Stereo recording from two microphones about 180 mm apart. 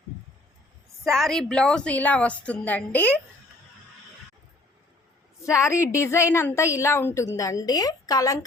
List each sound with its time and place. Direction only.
1.0 s a woman's voice: centre (ahead or behind)
5.4 s a woman's voice: 15° left (ahead or behind)